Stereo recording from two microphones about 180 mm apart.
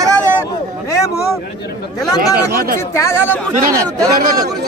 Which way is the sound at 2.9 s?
15° left (ahead or behind).